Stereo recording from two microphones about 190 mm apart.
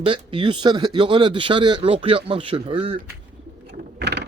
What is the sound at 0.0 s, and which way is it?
Speech, 25° right (ahead or behind).